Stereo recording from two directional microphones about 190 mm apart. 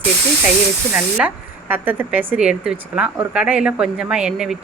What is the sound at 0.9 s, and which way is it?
A woman's voice, 10° right (ahead or behind).